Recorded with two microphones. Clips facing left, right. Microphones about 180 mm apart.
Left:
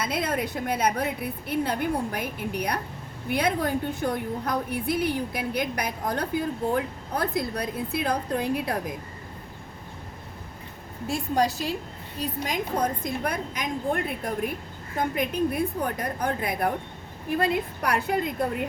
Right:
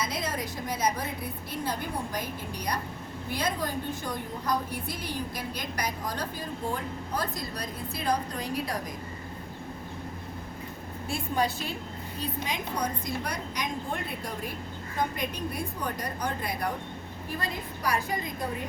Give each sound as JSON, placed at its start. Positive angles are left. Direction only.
{"t": 0.0, "sound": "a woman's voice", "side_deg": 60}
{"t": 11.1, "sound": "a woman's voice", "side_deg": 40}